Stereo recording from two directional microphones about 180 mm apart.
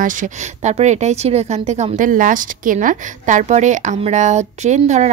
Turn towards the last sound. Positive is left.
turn(degrees=-40)  # may be behind; listen again after turning